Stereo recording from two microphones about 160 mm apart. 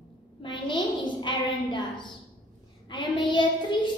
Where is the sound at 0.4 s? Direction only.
30° left (ahead or behind).